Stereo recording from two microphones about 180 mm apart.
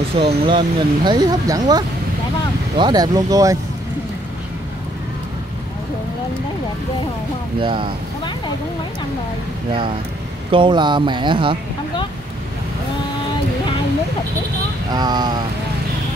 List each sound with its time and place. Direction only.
0.2 s speech: 25° right (ahead or behind)
7.6 s speech: 30° right (ahead or behind)
10.5 s speech: 25° right (ahead or behind)
14.9 s speech: 25° right (ahead or behind)